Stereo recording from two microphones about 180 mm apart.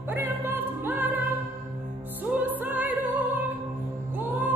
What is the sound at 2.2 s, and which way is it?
Music, 10° right (ahead or behind).